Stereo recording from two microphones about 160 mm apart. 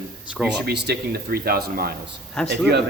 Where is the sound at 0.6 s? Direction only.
85° right.